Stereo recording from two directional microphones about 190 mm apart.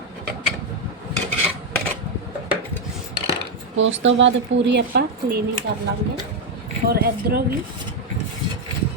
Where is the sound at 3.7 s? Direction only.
75° right (ahead or behind); by 5.4 s 55° right (ahead or behind).